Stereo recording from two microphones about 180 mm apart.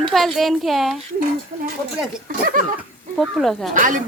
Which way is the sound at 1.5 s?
40° right (ahead or behind).